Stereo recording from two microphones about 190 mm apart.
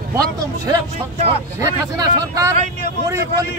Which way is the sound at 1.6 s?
20° right (ahead or behind).